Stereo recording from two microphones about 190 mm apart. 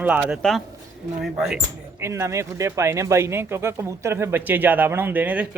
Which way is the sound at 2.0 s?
15° right (ahead or behind).